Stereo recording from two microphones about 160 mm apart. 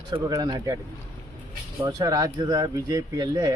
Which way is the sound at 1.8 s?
25° right (ahead or behind).